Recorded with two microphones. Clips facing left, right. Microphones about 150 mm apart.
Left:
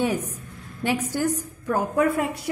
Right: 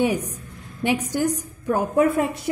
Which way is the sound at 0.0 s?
15° right (ahead or behind).